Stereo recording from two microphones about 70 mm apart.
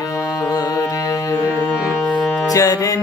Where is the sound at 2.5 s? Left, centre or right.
Left.